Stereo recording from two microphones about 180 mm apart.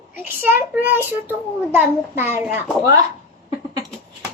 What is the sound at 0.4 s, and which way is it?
A child's voice, 10° right (ahead or behind).